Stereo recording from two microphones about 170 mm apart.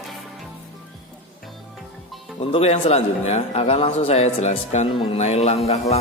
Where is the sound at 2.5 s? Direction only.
40° left (ahead or behind).